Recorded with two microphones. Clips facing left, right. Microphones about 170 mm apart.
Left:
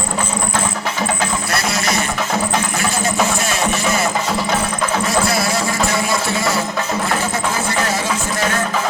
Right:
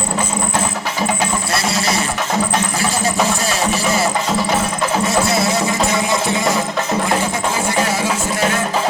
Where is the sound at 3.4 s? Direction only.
35° right (ahead or behind).